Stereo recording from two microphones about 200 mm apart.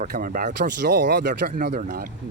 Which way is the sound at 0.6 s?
60° right (ahead or behind).